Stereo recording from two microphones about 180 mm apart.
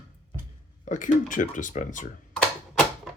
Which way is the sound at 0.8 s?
45° left (ahead or behind).